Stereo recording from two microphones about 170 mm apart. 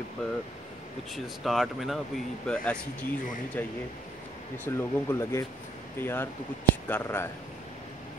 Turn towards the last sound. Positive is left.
turn(degrees=15)  # may be behind; listen again after turning